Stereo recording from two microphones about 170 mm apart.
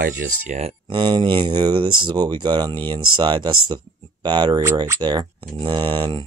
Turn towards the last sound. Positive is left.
turn(degrees=-25)  # may be behind; listen again after turning